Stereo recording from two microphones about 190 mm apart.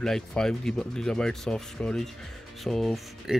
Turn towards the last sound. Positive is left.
turn(degrees=0)  # may be behind; listen again after turning